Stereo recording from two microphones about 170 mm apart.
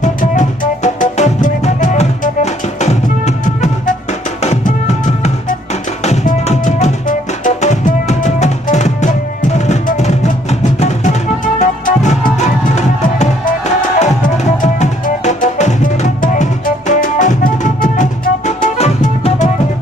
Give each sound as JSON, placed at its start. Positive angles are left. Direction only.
{"t": 0.0, "sound": "music", "side_deg": 50}